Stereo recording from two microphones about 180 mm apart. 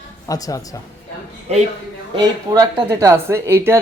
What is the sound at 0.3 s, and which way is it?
Speech, 20° left (ahead or behind).